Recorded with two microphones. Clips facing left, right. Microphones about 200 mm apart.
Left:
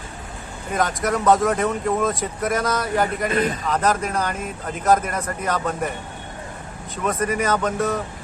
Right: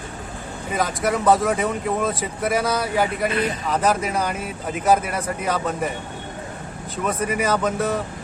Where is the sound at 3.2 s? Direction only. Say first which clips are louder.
Left 1 dB; 45° left (ahead or behind).